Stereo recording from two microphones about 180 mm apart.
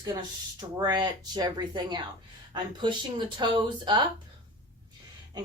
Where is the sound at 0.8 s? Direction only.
25° right (ahead or behind).